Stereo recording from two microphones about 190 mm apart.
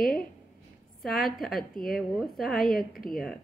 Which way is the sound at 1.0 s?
Centre (ahead or behind).